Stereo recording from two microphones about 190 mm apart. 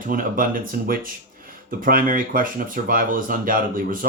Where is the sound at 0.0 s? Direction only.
45° right (ahead or behind).